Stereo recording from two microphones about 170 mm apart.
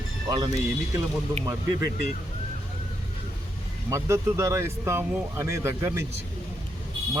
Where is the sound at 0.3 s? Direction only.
25° right (ahead or behind).